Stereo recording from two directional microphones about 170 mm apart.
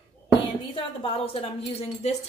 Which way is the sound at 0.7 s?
30° left (ahead or behind).